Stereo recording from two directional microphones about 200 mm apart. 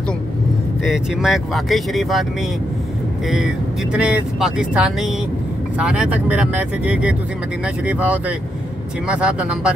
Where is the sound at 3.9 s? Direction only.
5° right (ahead or behind).